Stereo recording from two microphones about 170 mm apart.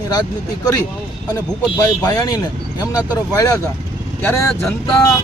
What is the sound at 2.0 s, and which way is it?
Speech, 20° left (ahead or behind).